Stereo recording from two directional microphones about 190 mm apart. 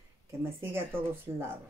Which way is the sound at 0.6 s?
10° right (ahead or behind).